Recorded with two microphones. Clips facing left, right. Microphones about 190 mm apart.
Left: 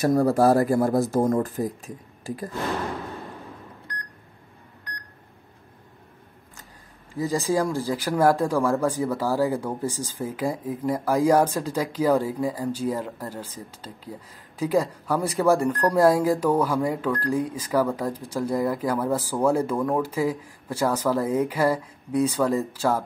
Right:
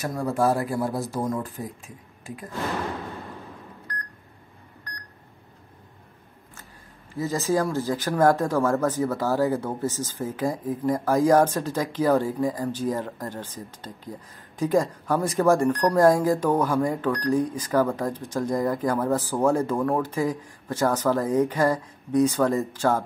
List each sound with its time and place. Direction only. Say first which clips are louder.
0.0 s speech: left 5 dB; 35° left (ahead or behind)
7.2 s speech: left 1 dB; 15° left (ahead or behind)